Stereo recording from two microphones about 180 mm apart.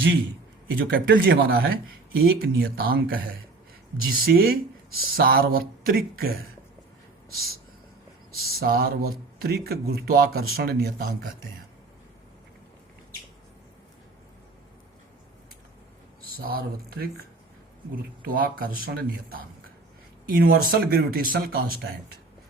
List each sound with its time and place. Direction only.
0.8 s speech: 90° right
2.2 s speech: 75° right (ahead or behind); by 6.3 s 55° right (ahead or behind)
8.4 s speech: 60° right (ahead or behind)
16.4 s speech: 55° right (ahead or behind)
18.3 s speech: 55° right (ahead or behind)